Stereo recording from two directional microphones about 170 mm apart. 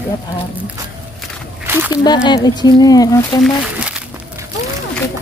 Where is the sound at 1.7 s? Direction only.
10° right (ahead or behind).